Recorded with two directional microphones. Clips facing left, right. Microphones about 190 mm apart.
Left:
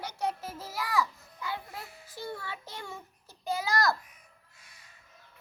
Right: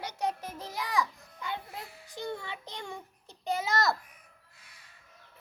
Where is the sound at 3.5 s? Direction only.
20° right (ahead or behind).